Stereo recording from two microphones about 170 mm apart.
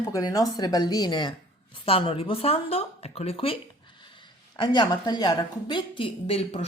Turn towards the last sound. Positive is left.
turn(degrees=35)  # may be behind; listen again after turning